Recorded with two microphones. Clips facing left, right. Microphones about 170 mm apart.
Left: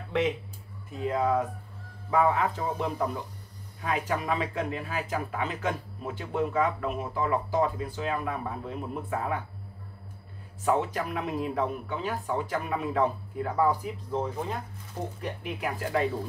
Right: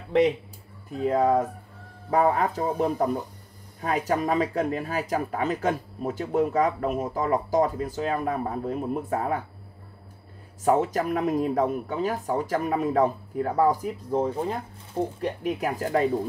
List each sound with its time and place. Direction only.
1.0 s speech: 40° right (ahead or behind)
10.6 s speech: 40° right (ahead or behind)